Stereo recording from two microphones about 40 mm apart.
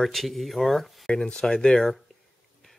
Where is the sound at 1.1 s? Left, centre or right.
Left.